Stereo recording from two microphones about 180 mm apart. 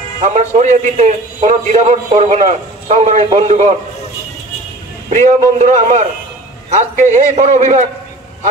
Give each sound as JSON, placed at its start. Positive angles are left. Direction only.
{"t": 0.2, "sound": "a man's voice", "side_deg": -40}
{"t": 5.1, "sound": "a man's voice", "side_deg": -45}